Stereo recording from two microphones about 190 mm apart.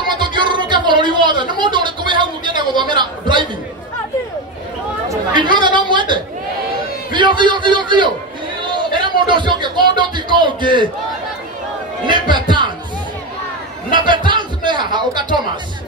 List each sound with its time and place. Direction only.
0.2 s a sound: 25° right (ahead or behind)
5.1 s chatter: 25° right (ahead or behind)
7.1 s a man's voice: 25° right (ahead or behind)
12.1 s music: 25° right (ahead or behind)
13.8 s a man's voice: 25° right (ahead or behind)